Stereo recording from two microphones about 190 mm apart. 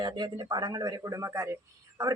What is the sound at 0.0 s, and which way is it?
Speech, 20° right (ahead or behind).